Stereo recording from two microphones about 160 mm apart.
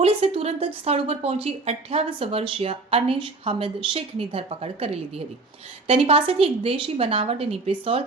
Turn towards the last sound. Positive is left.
turn(degrees=-35)  # may be behind; listen again after turning